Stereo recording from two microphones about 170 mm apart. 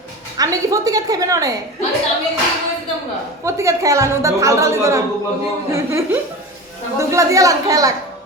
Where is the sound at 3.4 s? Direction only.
15° right (ahead or behind).